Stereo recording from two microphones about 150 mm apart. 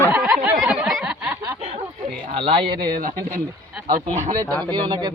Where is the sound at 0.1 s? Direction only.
10° right (ahead or behind).